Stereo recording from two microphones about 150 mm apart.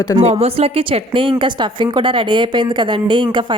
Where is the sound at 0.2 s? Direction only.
45° right (ahead or behind).